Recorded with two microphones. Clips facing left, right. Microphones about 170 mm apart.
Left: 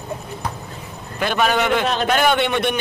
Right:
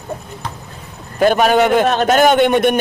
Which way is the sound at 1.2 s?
45° right (ahead or behind).